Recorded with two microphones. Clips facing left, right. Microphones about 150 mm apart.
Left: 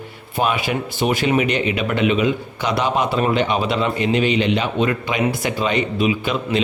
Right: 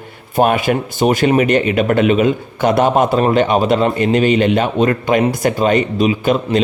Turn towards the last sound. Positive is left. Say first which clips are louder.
# right 6 dB
turn(degrees=-45)  # may be behind; listen again after turning